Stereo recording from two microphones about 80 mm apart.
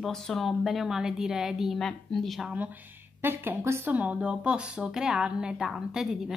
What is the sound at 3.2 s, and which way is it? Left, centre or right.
Speech, right.